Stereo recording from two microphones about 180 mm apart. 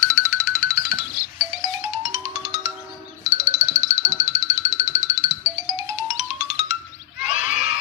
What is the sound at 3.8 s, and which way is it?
Music, 40° right (ahead or behind).